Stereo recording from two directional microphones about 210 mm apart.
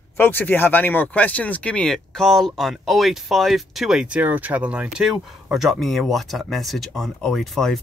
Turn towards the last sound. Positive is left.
turn(degrees=0)  # may be behind; listen again after turning